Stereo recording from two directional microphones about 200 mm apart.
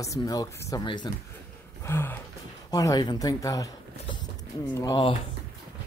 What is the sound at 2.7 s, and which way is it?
Speech, 15° left (ahead or behind).